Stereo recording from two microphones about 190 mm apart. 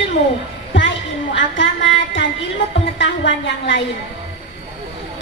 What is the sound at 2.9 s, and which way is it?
Speech, 75° left (ahead or behind).